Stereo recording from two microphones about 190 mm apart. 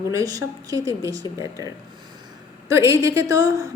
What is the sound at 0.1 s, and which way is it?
A woman's voice, 20° right (ahead or behind).